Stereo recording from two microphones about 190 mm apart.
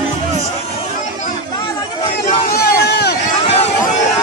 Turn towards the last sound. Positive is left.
turn(degrees=60)  # may be behind; listen again after turning